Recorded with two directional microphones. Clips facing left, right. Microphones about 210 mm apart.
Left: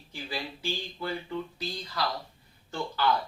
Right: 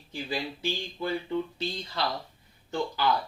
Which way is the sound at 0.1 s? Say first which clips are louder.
Right 4 dB; 20° right (ahead or behind).